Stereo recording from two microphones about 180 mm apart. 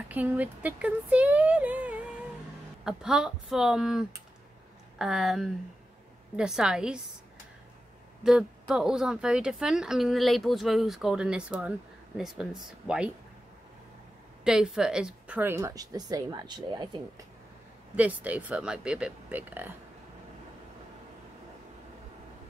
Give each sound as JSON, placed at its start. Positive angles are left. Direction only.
{"t": 0.1, "sound": "a woman's voice", "side_deg": -10}
{"t": 8.2, "sound": "a woman's voice", "side_deg": -5}
{"t": 14.4, "sound": "a woman's voice", "side_deg": -5}
{"t": 17.9, "sound": "a woman's voice", "side_deg": -10}